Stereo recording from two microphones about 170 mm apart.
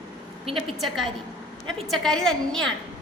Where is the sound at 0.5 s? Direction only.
Centre (ahead or behind).